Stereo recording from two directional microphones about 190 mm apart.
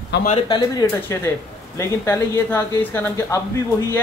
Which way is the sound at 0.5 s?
15° left (ahead or behind).